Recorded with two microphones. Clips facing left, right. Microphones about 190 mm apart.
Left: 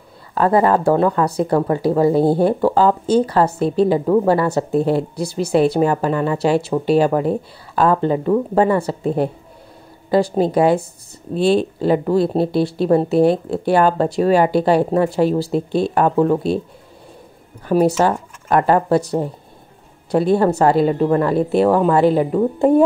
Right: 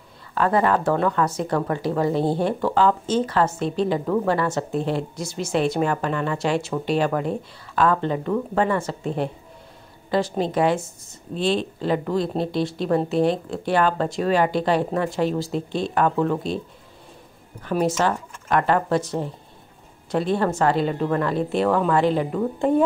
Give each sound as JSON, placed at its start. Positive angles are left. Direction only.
{"t": 0.3, "sound": "speech", "side_deg": 35}
{"t": 11.3, "sound": "speech", "side_deg": 10}
{"t": 11.8, "sound": "speech", "side_deg": 40}
{"t": 13.2, "sound": "speech", "side_deg": 5}
{"t": 13.7, "sound": "speech", "side_deg": 40}
{"t": 17.6, "sound": "speech", "side_deg": 35}
{"t": 20.3, "sound": "speech", "side_deg": 40}